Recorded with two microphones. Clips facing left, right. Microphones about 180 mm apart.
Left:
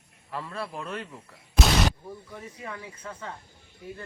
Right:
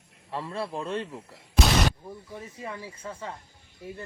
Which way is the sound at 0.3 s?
30° right (ahead or behind).